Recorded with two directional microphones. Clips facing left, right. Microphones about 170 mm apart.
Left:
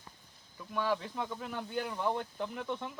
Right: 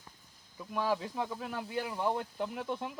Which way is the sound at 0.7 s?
10° right (ahead or behind).